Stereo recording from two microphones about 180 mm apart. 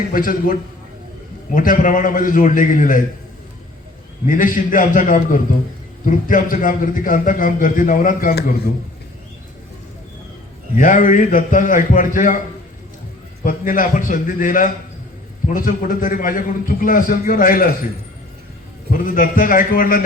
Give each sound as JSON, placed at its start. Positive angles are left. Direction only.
{"t": 0.1, "sound": "a man's voice", "side_deg": 50}
{"t": 1.5, "sound": "a man's voice", "side_deg": 50}
{"t": 4.3, "sound": "a man's voice", "side_deg": 50}
{"t": 10.8, "sound": "a man's voice", "side_deg": 45}
{"t": 13.4, "sound": "a man's voice", "side_deg": 50}
{"t": 18.9, "sound": "a man's voice", "side_deg": 50}